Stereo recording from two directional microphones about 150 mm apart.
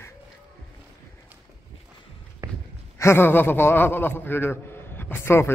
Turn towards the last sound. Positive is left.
turn(degrees=15)  # may be behind; listen again after turning